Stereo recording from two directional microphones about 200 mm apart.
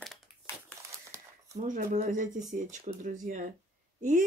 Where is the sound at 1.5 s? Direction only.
35° right (ahead or behind).